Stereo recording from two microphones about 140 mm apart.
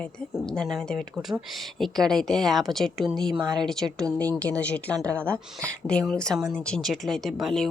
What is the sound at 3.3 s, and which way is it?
Speech, 30° right (ahead or behind).